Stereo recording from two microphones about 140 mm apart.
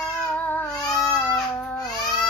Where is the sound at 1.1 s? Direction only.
5° left (ahead or behind).